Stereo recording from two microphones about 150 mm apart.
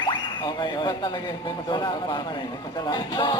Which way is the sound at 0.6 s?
30° left (ahead or behind).